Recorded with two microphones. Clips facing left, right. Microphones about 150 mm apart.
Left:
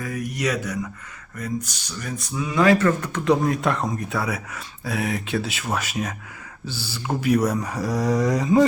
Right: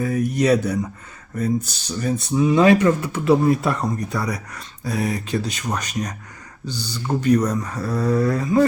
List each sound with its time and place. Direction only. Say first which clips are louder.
0.0 s speech: right 7 dB; 35° right (ahead or behind); by 8.6 s 20° left (ahead or behind)